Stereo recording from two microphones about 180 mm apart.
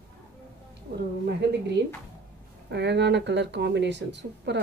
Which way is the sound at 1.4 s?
70° right (ahead or behind).